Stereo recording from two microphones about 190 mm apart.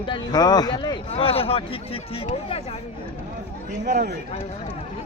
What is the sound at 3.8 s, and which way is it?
Speech, 45° right (ahead or behind).